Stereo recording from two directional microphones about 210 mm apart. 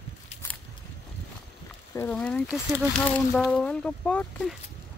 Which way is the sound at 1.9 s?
10° left (ahead or behind).